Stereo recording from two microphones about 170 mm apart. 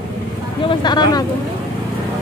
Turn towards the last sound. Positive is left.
turn(degrees=25)  # may be behind; listen again after turning